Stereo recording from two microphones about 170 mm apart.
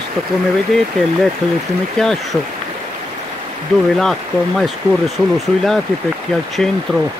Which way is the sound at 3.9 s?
Centre (ahead or behind).